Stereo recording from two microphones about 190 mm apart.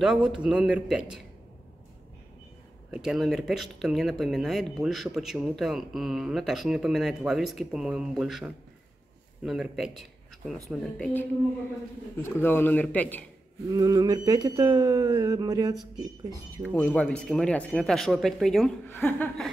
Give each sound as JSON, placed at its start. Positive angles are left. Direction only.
{"t": 0.0, "sound": "speech", "side_deg": -5}
{"t": 2.9, "sound": "speech", "side_deg": -5}
{"t": 12.2, "sound": "speech", "side_deg": 10}
{"t": 13.7, "sound": "speech", "side_deg": -20}
{"t": 16.7, "sound": "speech", "side_deg": 10}